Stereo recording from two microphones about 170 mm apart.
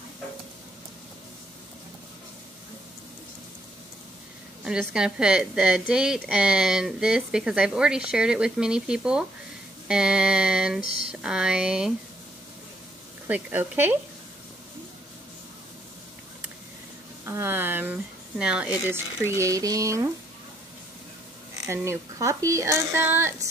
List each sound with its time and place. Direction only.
4.6 s a woman's voice: 5° right (ahead or behind)
13.3 s speech: 10° right (ahead or behind)
17.3 s speech: 10° right (ahead or behind)
21.6 s speech: 15° right (ahead or behind)